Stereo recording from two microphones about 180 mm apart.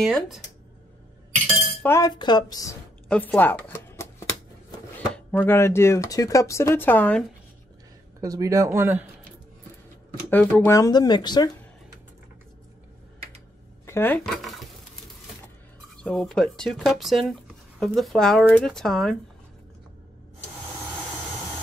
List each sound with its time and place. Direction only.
0.0 s speech: centre (ahead or behind)
1.8 s speech: 15° left (ahead or behind)
3.1 s shuffling cards: 10° left (ahead or behind)
5.1 s speech: 10° left (ahead or behind)
8.2 s speech: 20° right (ahead or behind)
10.3 s speech: 10° left (ahead or behind)
13.8 s speech: 10° left (ahead or behind)
16.0 s speech: 5° left (ahead or behind)